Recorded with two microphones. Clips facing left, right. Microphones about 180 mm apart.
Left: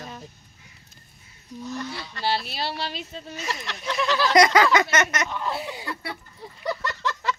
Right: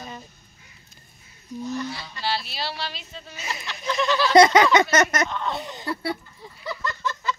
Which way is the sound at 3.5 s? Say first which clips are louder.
Even; 85° left.